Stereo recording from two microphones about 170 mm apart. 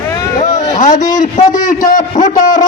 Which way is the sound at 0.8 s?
50° left (ahead or behind).